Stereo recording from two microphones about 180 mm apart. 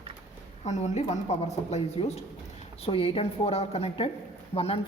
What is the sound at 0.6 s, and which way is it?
Speech, 40° left (ahead or behind).